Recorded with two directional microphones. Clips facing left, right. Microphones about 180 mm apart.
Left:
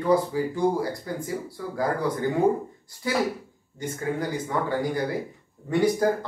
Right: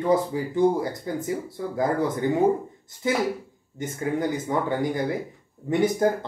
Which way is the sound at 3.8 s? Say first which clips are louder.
Right 2 dB; 20° right (ahead or behind).